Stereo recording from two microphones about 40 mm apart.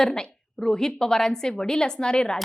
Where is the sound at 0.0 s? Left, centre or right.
Centre.